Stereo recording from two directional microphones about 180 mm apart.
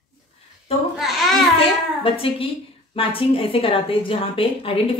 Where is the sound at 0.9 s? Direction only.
Centre (ahead or behind).